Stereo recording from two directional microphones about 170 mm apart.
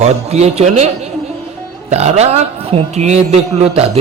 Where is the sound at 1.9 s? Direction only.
40° right (ahead or behind).